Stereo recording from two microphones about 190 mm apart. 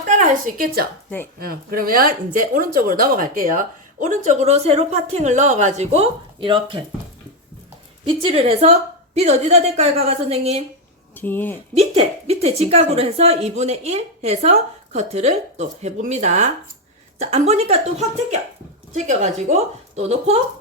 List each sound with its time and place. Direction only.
0.1 s a woman's voice: 40° right (ahead or behind); by 6.8 s 25° right (ahead or behind)
8.0 s speech: 30° right (ahead or behind)
11.1 s speech: 10° left (ahead or behind)
11.7 s speech: 30° right (ahead or behind)